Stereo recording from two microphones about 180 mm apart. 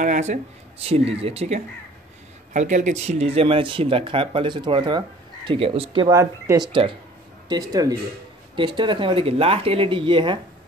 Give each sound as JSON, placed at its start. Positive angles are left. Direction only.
{"t": 0.0, "sound": "speech", "side_deg": -45}